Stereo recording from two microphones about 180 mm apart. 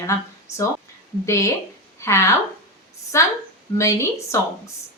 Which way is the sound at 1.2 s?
15° left (ahead or behind).